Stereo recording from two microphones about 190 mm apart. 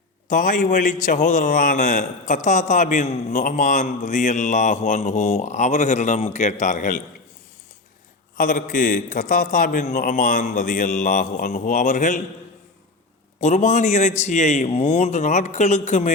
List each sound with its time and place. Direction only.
0.3 s a man's voice: 45° left (ahead or behind)
8.4 s speech: 45° left (ahead or behind)
13.4 s a man's voice: 40° left (ahead or behind)